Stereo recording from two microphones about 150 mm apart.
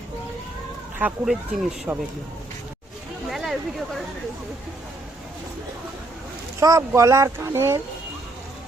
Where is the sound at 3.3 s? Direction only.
Centre (ahead or behind).